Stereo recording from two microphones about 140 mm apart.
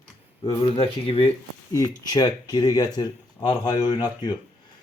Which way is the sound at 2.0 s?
30° left (ahead or behind).